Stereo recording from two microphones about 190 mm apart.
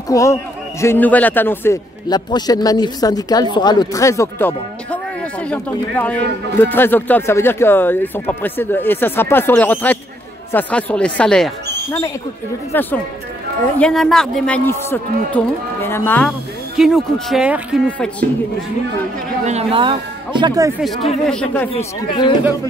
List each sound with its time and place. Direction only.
0.1 s a man's voice: 15° left (ahead or behind); by 17.8 s 5° right (ahead or behind)
19.4 s speech: 30° right (ahead or behind)
20.8 s a man's voice: centre (ahead or behind)